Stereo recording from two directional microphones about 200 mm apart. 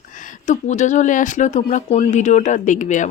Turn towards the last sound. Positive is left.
turn(degrees=40)  # may be behind; listen again after turning